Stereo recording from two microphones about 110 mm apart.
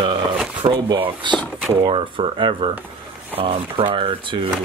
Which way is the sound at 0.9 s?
50° right (ahead or behind).